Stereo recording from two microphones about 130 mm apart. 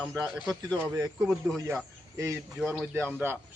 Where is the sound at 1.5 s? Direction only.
25° right (ahead or behind).